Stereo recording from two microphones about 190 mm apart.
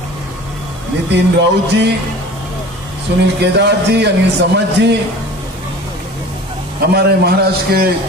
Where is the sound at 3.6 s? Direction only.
65° right (ahead or behind).